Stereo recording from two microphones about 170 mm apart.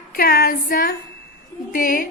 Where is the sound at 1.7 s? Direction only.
55° left (ahead or behind).